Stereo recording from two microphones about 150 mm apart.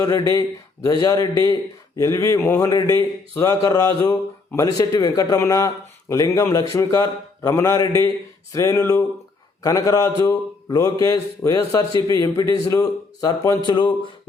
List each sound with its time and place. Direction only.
0.0 s a man's voice: 25° left (ahead or behind)